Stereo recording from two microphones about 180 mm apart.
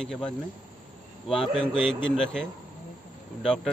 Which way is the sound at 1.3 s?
Centre (ahead or behind).